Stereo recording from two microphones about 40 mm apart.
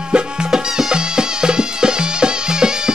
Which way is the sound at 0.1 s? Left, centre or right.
Right.